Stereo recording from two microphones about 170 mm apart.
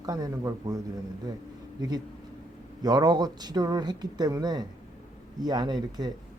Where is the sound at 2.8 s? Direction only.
25° right (ahead or behind).